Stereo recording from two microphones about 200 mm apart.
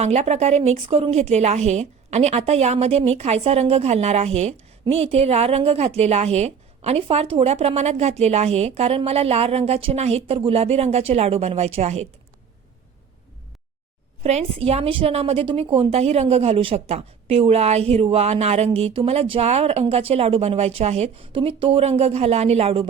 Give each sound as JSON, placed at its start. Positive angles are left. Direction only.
{"t": 0.0, "sound": "a woman's voice", "side_deg": -35}
{"t": 14.2, "sound": "a woman's voice", "side_deg": -30}